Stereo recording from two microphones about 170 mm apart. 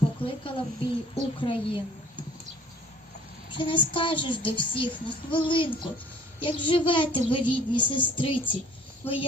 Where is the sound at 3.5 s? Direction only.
30° left (ahead or behind).